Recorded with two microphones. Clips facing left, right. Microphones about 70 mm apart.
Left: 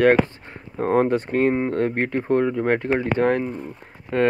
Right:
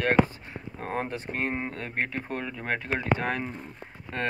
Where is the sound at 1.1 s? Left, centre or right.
Left.